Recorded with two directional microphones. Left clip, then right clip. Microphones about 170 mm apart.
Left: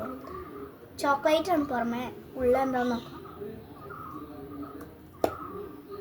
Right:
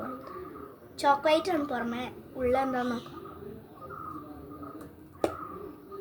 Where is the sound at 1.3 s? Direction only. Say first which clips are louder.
Left 1 dB; 15° right (ahead or behind).